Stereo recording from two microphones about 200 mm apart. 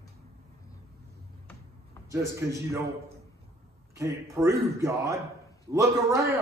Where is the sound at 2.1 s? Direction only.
15° right (ahead or behind).